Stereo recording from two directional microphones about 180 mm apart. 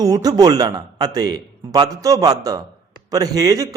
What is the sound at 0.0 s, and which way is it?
A man's voice, 20° right (ahead or behind).